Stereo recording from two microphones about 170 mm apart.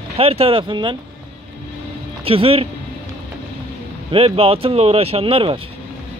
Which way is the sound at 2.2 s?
35° right (ahead or behind).